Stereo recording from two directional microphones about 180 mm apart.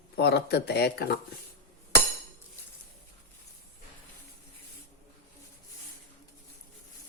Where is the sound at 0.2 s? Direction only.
65° left (ahead or behind).